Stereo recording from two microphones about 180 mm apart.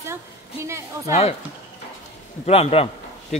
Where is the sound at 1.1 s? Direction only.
35° left (ahead or behind).